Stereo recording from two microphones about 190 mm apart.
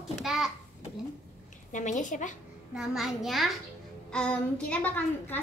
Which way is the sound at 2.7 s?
Centre (ahead or behind).